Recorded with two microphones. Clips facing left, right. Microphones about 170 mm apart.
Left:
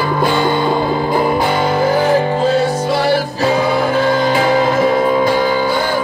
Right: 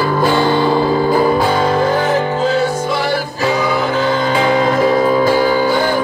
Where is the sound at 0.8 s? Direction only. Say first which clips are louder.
Right 2 dB; 5° right (ahead or behind).